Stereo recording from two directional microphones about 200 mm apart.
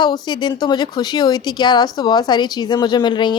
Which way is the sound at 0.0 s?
20° left (ahead or behind).